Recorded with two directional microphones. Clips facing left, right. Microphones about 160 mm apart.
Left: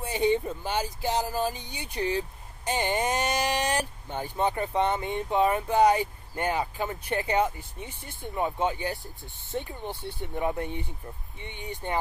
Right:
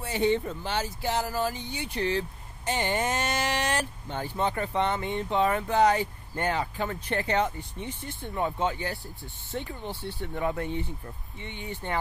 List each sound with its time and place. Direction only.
0.0 s speech: 15° left (ahead or behind)